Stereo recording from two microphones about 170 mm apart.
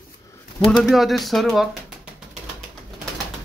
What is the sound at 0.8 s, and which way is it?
Speech, centre (ahead or behind).